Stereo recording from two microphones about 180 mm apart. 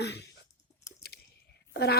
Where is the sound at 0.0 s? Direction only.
65° left (ahead or behind).